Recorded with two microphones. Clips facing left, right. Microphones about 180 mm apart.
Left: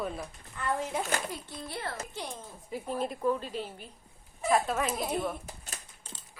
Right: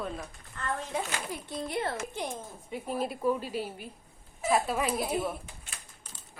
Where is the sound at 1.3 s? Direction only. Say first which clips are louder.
Right 5 dB; 20° right (ahead or behind).